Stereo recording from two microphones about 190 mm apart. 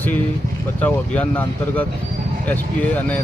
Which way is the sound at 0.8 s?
10° left (ahead or behind).